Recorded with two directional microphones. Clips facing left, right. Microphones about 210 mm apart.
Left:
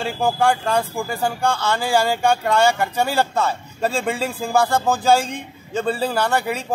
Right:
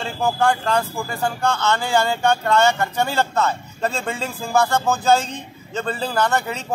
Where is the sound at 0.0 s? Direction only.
10° left (ahead or behind).